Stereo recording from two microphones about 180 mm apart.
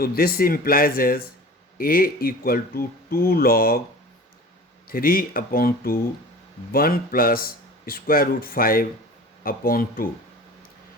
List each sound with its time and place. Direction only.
0.0 s a man's voice: 55° left (ahead or behind)
4.9 s a man's voice: 55° left (ahead or behind)